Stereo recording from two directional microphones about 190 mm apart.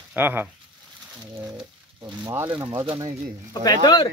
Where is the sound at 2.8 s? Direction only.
30° right (ahead or behind).